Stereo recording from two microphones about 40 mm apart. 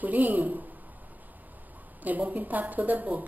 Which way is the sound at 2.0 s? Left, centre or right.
Right.